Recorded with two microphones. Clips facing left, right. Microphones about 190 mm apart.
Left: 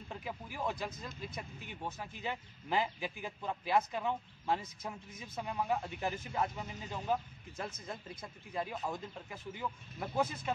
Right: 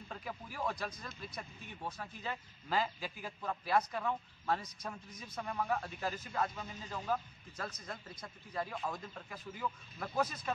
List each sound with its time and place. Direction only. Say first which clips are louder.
0.1 s speech: left 2 dB; 15° left (ahead or behind)